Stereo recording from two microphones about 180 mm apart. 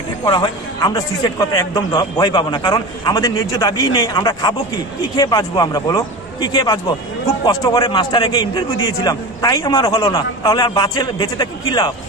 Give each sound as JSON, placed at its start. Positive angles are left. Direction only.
{"t": 0.2, "sound": "a man's voice", "side_deg": 25}